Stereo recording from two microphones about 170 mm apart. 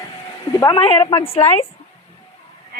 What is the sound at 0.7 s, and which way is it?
Speech, 30° left (ahead or behind).